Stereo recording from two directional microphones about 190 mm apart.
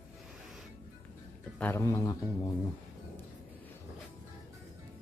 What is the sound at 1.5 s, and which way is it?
Speech, 10° left (ahead or behind).